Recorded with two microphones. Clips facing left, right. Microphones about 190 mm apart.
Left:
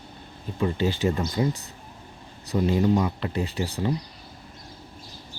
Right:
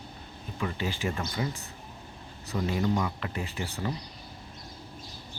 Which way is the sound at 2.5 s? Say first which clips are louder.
Left 6 dB; 20° left (ahead or behind).